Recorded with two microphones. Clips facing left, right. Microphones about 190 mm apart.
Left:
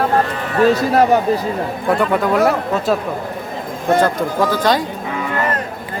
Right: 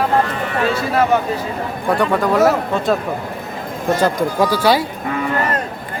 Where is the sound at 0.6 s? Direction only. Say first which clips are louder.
Left 6 dB; 40° left (ahead or behind).